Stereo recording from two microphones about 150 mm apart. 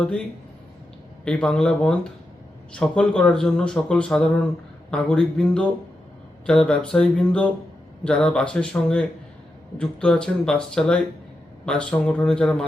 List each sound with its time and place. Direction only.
1.2 s a man's voice: 5° left (ahead or behind)